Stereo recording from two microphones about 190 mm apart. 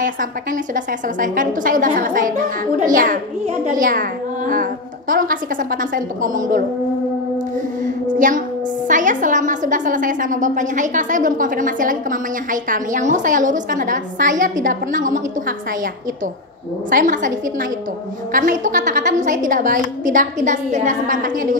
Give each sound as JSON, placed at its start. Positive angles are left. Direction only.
{"t": 0.0, "sound": "a woman's voice", "side_deg": -45}
{"t": 7.8, "sound": "a sound", "side_deg": -45}
{"t": 8.8, "sound": "a woman's voice", "side_deg": -40}
{"t": 16.9, "sound": "a woman's voice", "side_deg": -40}